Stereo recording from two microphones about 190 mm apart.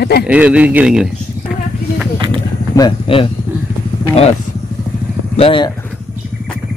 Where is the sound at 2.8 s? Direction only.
25° left (ahead or behind).